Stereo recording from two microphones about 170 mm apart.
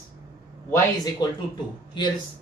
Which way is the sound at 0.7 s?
20° left (ahead or behind).